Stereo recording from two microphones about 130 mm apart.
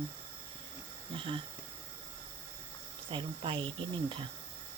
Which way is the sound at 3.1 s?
40° right (ahead or behind).